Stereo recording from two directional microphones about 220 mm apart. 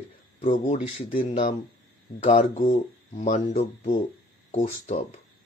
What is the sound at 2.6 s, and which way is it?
Speech, 40° left (ahead or behind).